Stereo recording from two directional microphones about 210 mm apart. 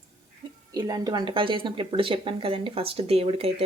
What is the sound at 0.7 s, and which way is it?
Speech, 20° right (ahead or behind).